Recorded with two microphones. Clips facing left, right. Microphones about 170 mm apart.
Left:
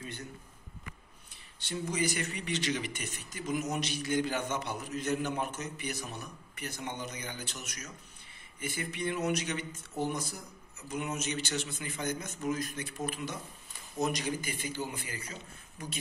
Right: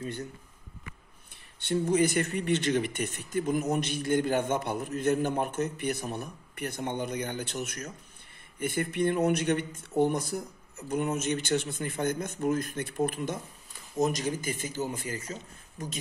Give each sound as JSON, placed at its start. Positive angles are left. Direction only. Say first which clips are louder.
{"t": 1.6, "sound": "a man's voice", "louder": "right 8 dB", "side_deg": -55}